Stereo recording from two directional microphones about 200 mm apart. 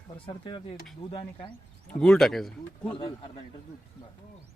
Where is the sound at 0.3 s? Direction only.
25° left (ahead or behind).